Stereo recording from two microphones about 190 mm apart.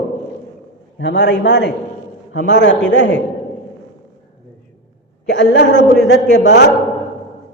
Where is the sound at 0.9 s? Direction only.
65° left (ahead or behind).